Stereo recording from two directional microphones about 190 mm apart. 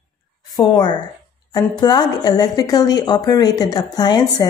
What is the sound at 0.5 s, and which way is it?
A woman's voice, 20° left (ahead or behind).